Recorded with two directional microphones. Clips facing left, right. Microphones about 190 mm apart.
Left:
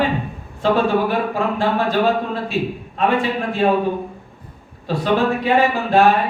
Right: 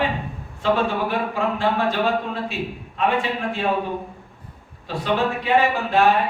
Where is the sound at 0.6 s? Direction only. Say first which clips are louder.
Left 4 dB; 35° left (ahead or behind).